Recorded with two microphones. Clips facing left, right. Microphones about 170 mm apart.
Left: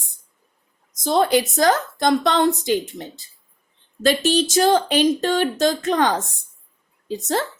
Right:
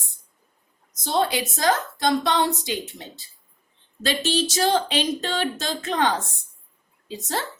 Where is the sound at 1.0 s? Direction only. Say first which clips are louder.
Left 6 dB; 45° left (ahead or behind).